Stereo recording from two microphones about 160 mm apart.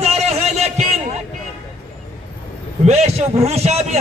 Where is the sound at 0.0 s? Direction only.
40° right (ahead or behind).